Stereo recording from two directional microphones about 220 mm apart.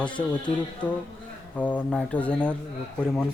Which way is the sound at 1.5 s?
5° left (ahead or behind).